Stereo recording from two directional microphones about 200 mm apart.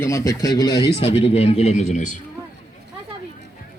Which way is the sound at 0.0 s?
15° left (ahead or behind).